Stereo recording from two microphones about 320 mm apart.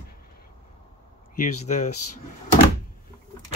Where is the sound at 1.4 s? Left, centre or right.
Left.